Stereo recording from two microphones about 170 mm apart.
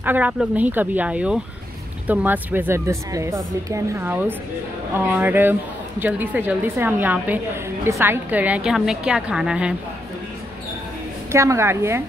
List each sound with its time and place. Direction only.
0.0 s a woman's voice: 10° right (ahead or behind)
11.3 s speech: 15° right (ahead or behind)